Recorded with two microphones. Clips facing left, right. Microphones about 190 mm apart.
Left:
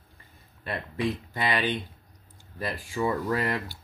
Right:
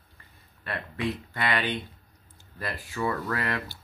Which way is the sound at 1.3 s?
15° left (ahead or behind).